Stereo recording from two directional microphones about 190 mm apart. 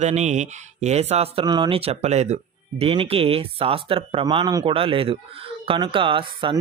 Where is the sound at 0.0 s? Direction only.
35° right (ahead or behind).